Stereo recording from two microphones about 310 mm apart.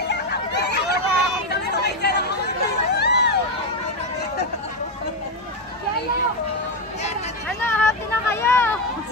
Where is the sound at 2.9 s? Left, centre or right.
Left.